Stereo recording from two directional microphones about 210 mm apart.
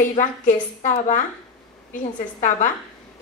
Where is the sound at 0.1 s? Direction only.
35° left (ahead or behind).